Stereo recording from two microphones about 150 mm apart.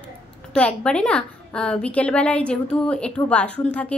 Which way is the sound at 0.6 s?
5° left (ahead or behind).